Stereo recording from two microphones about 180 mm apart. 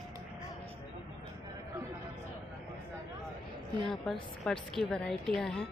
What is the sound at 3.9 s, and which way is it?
A woman's voice, centre (ahead or behind).